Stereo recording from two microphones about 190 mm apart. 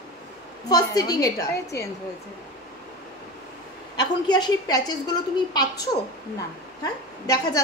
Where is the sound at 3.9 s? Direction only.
20° left (ahead or behind).